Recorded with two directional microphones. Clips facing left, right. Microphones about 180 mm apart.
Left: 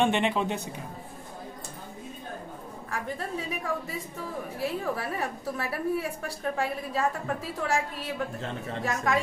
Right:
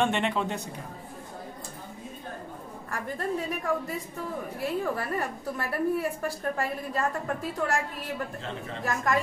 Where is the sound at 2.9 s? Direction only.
Centre (ahead or behind).